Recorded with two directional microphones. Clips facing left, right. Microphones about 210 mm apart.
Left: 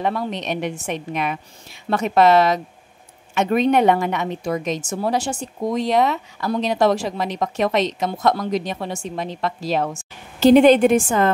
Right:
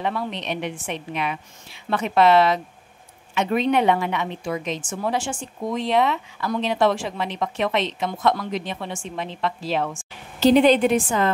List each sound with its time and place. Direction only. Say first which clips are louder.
0.0 s a woman's voice: left 3 dB; 45° left (ahead or behind)